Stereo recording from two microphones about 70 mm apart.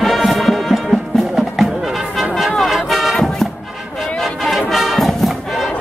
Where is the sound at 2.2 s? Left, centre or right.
Centre.